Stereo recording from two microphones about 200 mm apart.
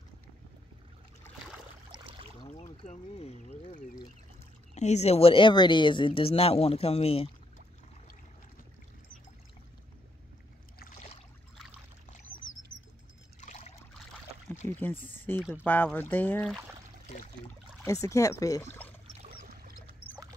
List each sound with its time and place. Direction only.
1.9 s a sound: 25° right (ahead or behind)
2.6 s speech: 30° left (ahead or behind)
13.4 s trickle: 35° left (ahead or behind)
14.8 s speech: 10° left (ahead or behind)
17.8 s speech: 15° left (ahead or behind)
19.1 s pour: 45° right (ahead or behind)